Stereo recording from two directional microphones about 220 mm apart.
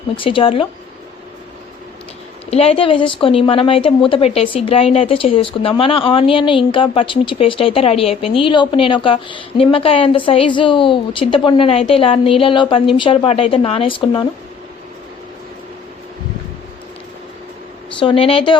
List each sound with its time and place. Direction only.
0.2 s a woman's voice: 25° left (ahead or behind)
2.5 s a woman's voice: 25° left (ahead or behind)
18.0 s a woman's voice: 25° left (ahead or behind)